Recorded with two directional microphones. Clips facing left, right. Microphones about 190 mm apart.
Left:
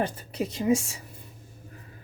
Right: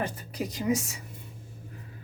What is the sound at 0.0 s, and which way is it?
Speech, 25° left (ahead or behind).